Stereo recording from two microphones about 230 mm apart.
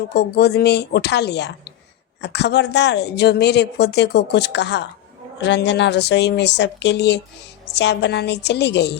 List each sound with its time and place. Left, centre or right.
0.1 s speech: left